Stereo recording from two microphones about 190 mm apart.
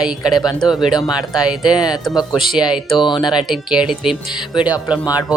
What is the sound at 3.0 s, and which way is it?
Speech, 25° left (ahead or behind).